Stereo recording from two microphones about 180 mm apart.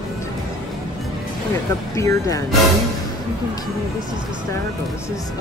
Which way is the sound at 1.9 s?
15° left (ahead or behind).